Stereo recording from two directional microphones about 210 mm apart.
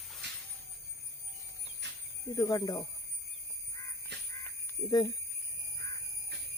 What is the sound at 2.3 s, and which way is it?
Speech, 15° left (ahead or behind).